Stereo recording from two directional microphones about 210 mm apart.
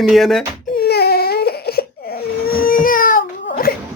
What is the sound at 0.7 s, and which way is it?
Baby cry, 50° left (ahead or behind).